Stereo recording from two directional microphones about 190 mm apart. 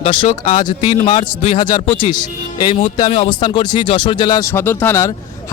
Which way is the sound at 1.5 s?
25° left (ahead or behind).